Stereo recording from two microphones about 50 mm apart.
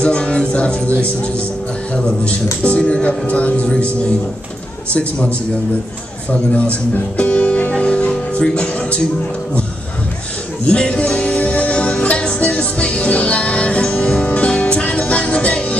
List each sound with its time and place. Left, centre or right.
0.0 s music: left
2.0 s speech: centre
6.5 s music: left
10.7 s music: left